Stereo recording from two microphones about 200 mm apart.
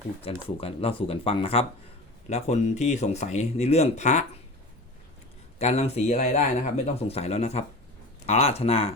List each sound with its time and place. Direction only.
0.3 s speech: 30° left (ahead or behind)
5.5 s speech: 30° left (ahead or behind)